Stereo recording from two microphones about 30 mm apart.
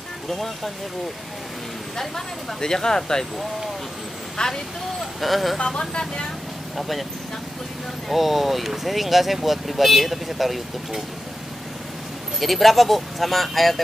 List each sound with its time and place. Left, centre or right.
2.0 s speech: centre
4.4 s speech: left
5.2 s speech: centre
5.7 s speech: left
6.8 s speech: centre
8.1 s speech: centre
12.4 s speech: centre